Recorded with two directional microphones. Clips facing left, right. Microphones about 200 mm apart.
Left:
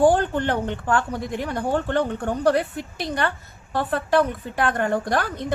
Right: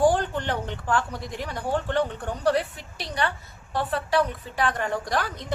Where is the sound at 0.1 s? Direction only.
55° left (ahead or behind).